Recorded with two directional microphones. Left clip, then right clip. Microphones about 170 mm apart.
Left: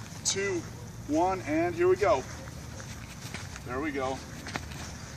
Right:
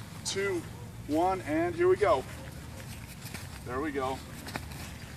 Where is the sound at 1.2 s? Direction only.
50° left (ahead or behind).